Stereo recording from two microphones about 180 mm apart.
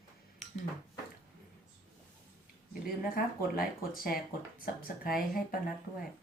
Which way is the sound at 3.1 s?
55° left (ahead or behind).